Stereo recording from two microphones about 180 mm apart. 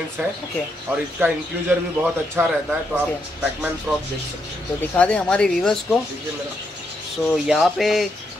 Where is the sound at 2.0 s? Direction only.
5° right (ahead or behind).